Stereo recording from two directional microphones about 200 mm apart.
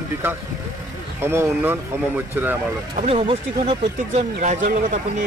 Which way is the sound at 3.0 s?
30° right (ahead or behind).